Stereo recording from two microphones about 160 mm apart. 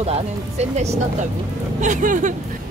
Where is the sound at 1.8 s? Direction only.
55° right (ahead or behind).